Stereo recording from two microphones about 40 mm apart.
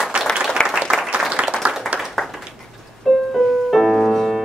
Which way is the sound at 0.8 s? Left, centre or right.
Centre.